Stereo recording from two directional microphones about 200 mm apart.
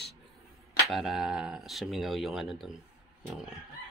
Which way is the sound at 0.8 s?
Centre (ahead or behind).